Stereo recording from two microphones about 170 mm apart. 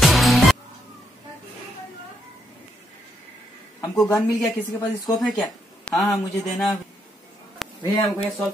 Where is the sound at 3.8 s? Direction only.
15° left (ahead or behind).